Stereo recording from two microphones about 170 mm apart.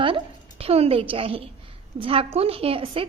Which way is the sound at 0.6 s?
35° right (ahead or behind).